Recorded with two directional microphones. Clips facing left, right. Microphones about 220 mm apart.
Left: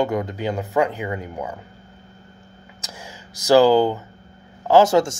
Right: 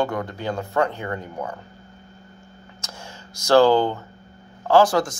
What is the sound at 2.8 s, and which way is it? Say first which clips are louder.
Whispering: left 1 dB; 15° left (ahead or behind).